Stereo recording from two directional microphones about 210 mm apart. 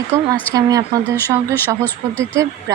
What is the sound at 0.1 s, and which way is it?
Speech, 15° right (ahead or behind).